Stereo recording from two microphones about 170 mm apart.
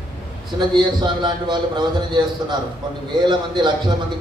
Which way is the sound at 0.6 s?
25° right (ahead or behind).